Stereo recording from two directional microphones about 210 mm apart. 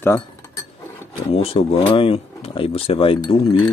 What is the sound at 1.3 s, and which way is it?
Speech, 25° left (ahead or behind).